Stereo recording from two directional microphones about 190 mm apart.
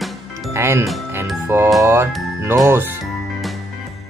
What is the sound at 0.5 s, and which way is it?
Speech, 15° right (ahead or behind).